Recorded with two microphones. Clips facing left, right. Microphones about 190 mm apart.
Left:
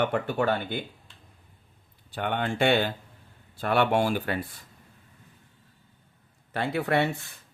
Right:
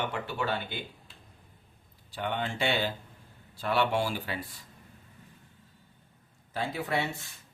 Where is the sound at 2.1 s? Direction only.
60° left (ahead or behind).